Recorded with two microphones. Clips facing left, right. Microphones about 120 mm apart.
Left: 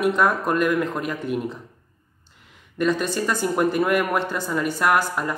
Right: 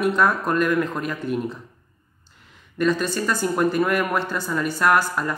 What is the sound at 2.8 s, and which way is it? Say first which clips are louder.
Speech: even; 20° left (ahead or behind).